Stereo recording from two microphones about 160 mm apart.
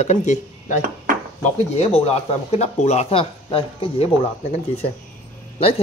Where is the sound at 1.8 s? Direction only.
40° left (ahead or behind).